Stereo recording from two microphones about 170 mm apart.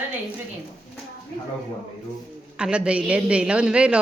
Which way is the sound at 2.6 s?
5° right (ahead or behind).